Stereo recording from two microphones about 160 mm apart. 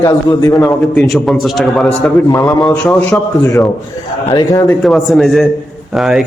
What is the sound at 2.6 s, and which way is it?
Speech, 5° left (ahead or behind).